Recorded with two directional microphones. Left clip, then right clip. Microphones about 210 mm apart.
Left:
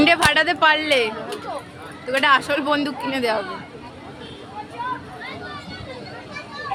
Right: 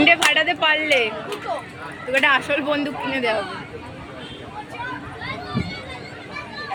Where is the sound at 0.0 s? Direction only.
20° left (ahead or behind).